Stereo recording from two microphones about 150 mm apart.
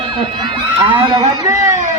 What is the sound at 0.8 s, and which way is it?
Speech, 30° right (ahead or behind).